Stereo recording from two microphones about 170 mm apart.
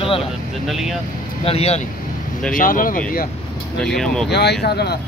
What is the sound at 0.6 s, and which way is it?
Speech, centre (ahead or behind).